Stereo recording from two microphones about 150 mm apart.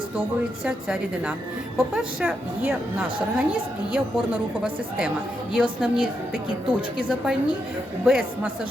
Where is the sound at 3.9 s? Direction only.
5° right (ahead or behind).